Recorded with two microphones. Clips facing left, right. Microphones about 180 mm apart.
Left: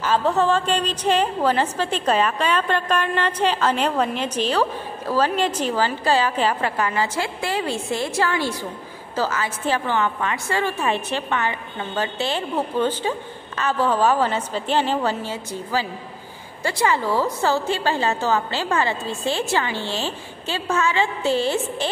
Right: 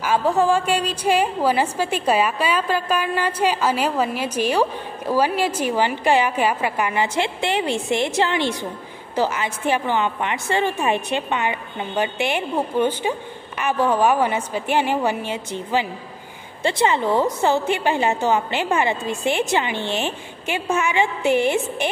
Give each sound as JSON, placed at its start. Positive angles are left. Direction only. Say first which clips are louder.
{"t": 0.0, "sound": "a woman's voice", "louder": "right 1 dB", "side_deg": -10}